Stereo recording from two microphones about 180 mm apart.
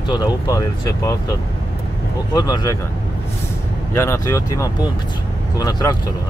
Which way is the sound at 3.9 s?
15° left (ahead or behind).